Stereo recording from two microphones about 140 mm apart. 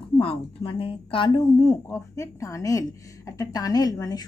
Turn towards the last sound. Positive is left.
turn(degrees=25)  # may be behind; listen again after turning